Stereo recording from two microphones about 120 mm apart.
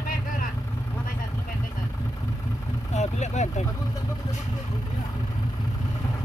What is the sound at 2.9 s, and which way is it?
Vehicle, 75° left (ahead or behind).